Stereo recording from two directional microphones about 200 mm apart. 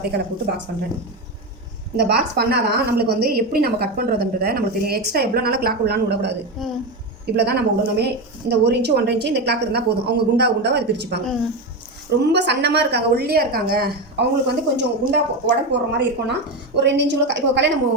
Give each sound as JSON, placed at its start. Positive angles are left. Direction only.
{"t": 0.0, "sound": "a woman's voice", "side_deg": -50}
{"t": 2.0, "sound": "a woman's voice", "side_deg": -55}
{"t": 6.6, "sound": "a woman's voice", "side_deg": 0}
{"t": 7.3, "sound": "a woman's voice", "side_deg": -55}
{"t": 12.2, "sound": "a woman's voice", "side_deg": -60}